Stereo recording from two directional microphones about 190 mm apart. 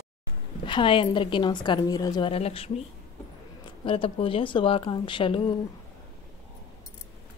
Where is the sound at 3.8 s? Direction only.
30° left (ahead or behind).